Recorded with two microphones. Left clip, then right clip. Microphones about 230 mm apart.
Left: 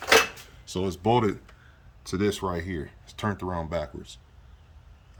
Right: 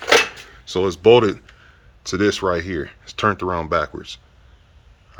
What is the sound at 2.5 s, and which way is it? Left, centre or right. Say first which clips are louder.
Speech: right 10 dB; right.